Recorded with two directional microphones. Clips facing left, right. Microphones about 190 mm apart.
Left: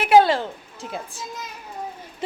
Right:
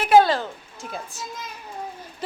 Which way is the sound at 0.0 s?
20° left (ahead or behind).